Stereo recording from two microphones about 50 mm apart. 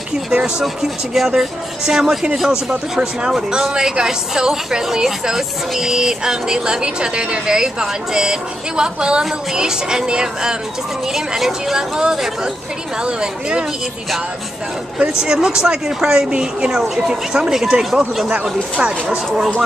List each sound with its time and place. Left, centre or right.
0.3 s speech: centre
0.8 s a woman's voice: centre
15.1 s speech: centre
18.3 s a woman's voice: centre
19.0 s speech: centre